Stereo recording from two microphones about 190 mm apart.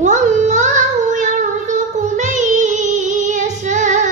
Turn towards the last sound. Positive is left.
turn(degrees=-40)  # may be behind; listen again after turning